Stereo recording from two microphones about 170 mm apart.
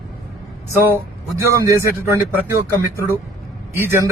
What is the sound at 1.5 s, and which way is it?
A man's voice, 20° right (ahead or behind).